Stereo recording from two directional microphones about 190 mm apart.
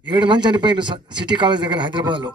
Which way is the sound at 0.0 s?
25° right (ahead or behind).